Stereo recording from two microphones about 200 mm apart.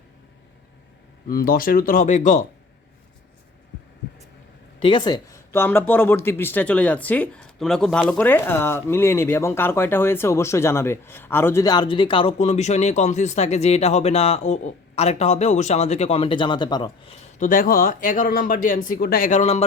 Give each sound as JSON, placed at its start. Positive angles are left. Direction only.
{"t": 1.3, "sound": "speech", "side_deg": 45}
{"t": 4.8, "sound": "speech", "side_deg": 25}
{"t": 17.4, "sound": "speech", "side_deg": 40}